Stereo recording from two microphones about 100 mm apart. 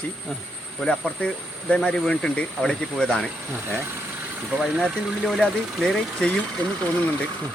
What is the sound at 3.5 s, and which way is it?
Speech, 20° right (ahead or behind).